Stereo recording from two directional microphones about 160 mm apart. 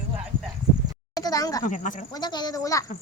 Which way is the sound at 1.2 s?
25° left (ahead or behind).